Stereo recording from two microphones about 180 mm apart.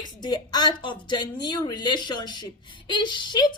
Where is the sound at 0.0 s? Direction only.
25° left (ahead or behind).